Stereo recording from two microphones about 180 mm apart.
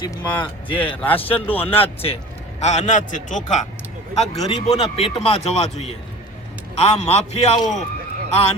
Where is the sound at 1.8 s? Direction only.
30° left (ahead or behind).